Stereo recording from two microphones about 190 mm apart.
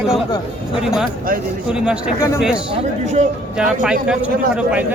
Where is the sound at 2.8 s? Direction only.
35° right (ahead or behind).